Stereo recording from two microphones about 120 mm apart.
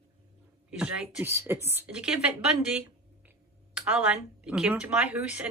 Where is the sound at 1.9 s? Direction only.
5° right (ahead or behind).